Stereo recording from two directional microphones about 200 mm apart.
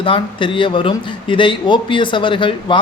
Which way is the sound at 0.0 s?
25° left (ahead or behind).